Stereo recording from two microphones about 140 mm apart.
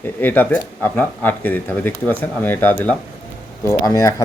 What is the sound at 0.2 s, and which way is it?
Speech, 15° left (ahead or behind).